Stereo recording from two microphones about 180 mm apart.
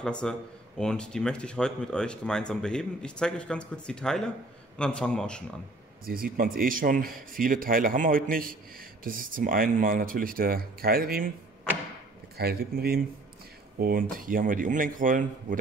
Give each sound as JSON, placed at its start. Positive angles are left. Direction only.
{"t": 0.0, "sound": "speech", "side_deg": 5}
{"t": 6.0, "sound": "a man's voice", "side_deg": -55}
{"t": 12.4, "sound": "a man's voice", "side_deg": -60}